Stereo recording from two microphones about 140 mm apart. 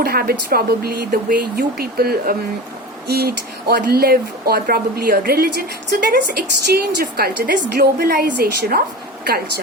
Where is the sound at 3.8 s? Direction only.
90° right.